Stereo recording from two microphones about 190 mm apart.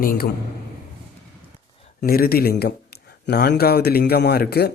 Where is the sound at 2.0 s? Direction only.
50° left (ahead or behind).